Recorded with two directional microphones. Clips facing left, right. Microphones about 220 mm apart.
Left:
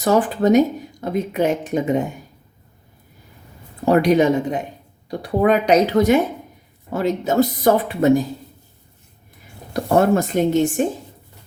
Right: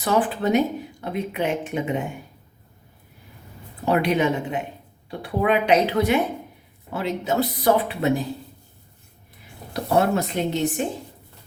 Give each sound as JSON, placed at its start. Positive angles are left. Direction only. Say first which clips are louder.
{"t": 0.0, "sound": "speech", "louder": "left 5 dB", "side_deg": 40}
{"t": 3.8, "sound": "speech", "louder": "left 6 dB", "side_deg": 40}
{"t": 9.7, "sound": "speech", "louder": "left 5 dB", "side_deg": 45}